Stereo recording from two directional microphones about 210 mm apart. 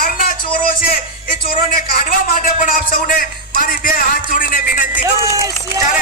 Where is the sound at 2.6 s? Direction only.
40° left (ahead or behind).